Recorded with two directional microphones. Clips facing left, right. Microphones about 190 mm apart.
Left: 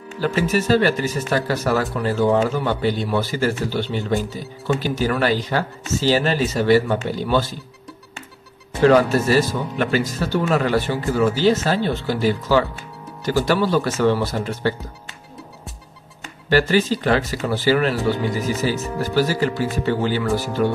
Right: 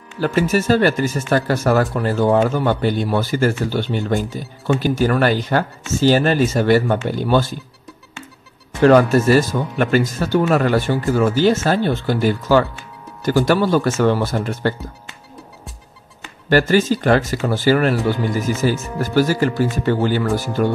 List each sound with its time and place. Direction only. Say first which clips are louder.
0.2 s speech: right 3 dB; 50° right (ahead or behind)
8.8 s speech: right 3 dB; 50° right (ahead or behind)
16.4 s speech: right 2 dB; 45° right (ahead or behind)